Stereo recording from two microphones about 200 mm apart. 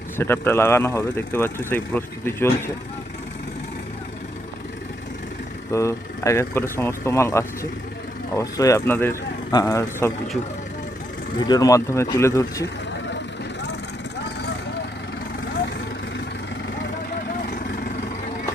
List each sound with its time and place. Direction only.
0.2 s speech: 10° left (ahead or behind)
5.7 s speech: 15° left (ahead or behind)
11.3 s speech: 20° left (ahead or behind)